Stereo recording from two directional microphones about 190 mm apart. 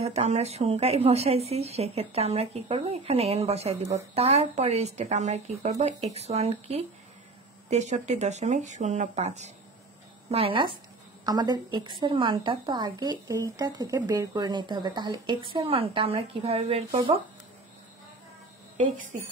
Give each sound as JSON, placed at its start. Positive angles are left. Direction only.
{"t": 0.0, "sound": "a woman's voice", "side_deg": -35}